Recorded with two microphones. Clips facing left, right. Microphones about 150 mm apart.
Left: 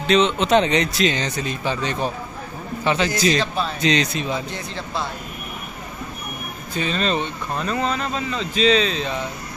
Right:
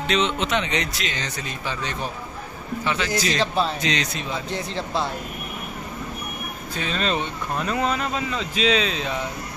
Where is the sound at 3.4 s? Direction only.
30° right (ahead or behind).